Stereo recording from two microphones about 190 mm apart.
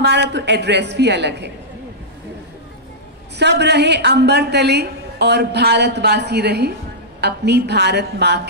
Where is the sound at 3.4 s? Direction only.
65° right (ahead or behind).